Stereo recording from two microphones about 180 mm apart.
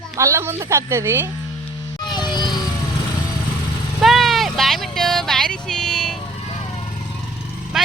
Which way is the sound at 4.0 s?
Centre (ahead or behind).